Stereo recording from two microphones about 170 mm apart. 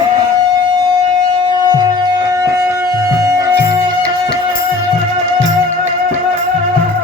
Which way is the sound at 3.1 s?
15° right (ahead or behind).